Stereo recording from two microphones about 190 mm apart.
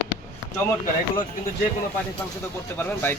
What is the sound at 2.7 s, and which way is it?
Speech, 10° left (ahead or behind).